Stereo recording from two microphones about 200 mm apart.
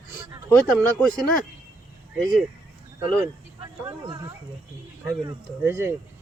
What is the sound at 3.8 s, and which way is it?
Speech, 20° right (ahead or behind).